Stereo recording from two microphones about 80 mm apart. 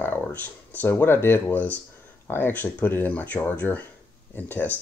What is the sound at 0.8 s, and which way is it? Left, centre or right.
Speech, left.